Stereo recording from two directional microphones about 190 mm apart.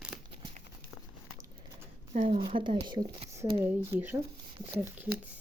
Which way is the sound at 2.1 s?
40° right (ahead or behind).